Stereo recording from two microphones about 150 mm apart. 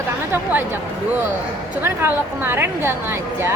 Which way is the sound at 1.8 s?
15° right (ahead or behind).